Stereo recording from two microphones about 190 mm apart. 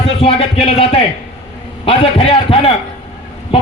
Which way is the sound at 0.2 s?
30° left (ahead or behind).